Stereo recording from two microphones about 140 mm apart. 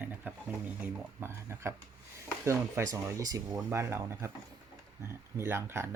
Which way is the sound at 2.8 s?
20° right (ahead or behind).